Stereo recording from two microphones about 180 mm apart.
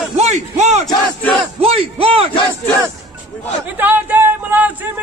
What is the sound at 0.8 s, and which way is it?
Battle cry, centre (ahead or behind).